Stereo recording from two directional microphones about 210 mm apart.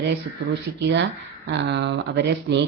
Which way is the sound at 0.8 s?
60° right (ahead or behind).